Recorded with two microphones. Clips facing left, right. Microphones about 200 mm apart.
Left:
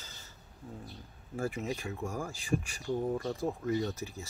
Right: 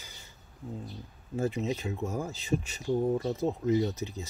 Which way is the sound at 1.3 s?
20° right (ahead or behind).